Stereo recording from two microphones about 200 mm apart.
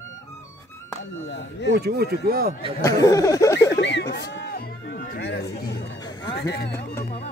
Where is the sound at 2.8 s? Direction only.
15° left (ahead or behind).